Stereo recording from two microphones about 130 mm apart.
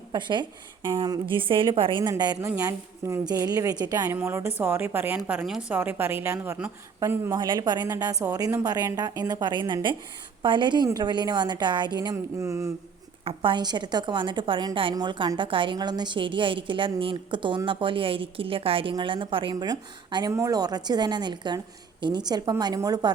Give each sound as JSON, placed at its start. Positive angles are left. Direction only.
{"t": 0.1, "sound": "a woman's voice", "side_deg": -35}
{"t": 7.4, "sound": "a woman's voice", "side_deg": -35}
{"t": 13.2, "sound": "a woman's voice", "side_deg": -40}